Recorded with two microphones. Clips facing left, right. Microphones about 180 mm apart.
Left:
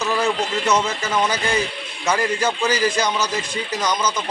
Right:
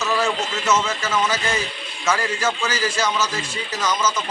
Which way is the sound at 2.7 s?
15° left (ahead or behind).